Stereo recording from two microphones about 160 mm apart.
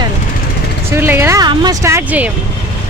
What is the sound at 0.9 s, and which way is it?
Speech, 15° right (ahead or behind).